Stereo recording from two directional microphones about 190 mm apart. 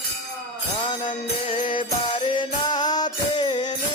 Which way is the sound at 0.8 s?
25° left (ahead or behind).